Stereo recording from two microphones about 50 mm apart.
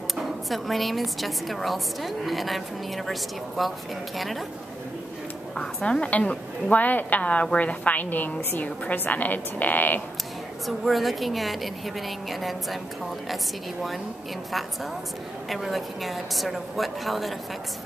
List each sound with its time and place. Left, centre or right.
0.1 s a woman's voice: centre
5.8 s a woman's voice: left
10.9 s a woman's voice: centre
15.5 s a woman's voice: centre